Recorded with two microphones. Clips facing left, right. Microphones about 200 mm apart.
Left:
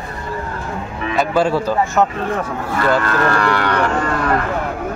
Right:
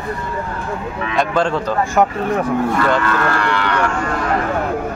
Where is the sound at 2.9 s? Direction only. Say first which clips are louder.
Left 1 dB; 40° left (ahead or behind).